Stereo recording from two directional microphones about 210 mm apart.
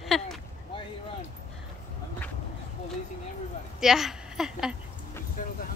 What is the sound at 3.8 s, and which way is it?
Speech, centre (ahead or behind).